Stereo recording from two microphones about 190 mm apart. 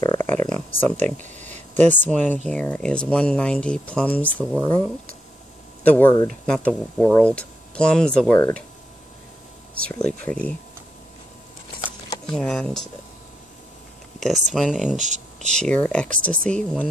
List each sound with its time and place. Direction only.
0.0 s a sound: 20° left (ahead or behind)
1.1 s a sound: 40° right (ahead or behind)
1.5 s speech: 10° left (ahead or behind)
5.9 s speech: 10° left (ahead or behind)
9.8 s speech: 5° left (ahead or behind)
12.3 s speech: 5° left (ahead or behind)
14.2 s speech: centre (ahead or behind)
15.0 s speech: 40° right (ahead or behind)
15.5 s speech: 5° left (ahead or behind)